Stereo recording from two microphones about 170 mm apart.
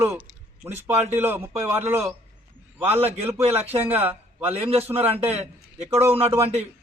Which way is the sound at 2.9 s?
35° right (ahead or behind).